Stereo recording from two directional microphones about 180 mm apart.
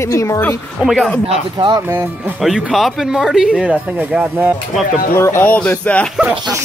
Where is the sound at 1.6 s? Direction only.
25° right (ahead or behind).